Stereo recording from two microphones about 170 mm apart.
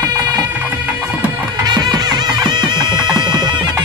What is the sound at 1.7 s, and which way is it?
Music, 25° right (ahead or behind).